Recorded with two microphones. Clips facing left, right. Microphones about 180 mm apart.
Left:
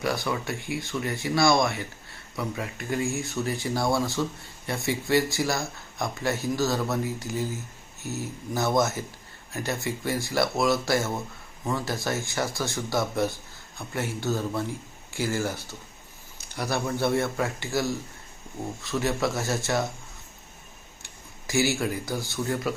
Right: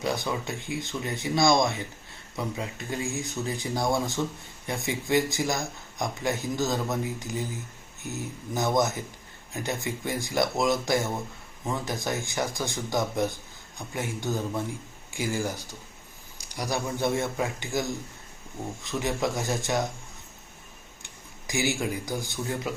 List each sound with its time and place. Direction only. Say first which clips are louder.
0.0 s speech: left 1 dB; 20° right (ahead or behind)
21.0 s speech: even; 15° right (ahead or behind)